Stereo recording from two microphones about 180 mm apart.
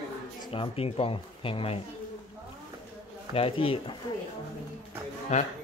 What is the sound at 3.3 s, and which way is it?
Speech, 30° left (ahead or behind).